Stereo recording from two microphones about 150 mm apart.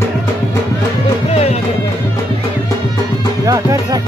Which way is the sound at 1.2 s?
40° left (ahead or behind).